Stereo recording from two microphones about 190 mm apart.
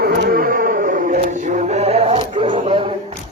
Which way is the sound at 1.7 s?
35° right (ahead or behind).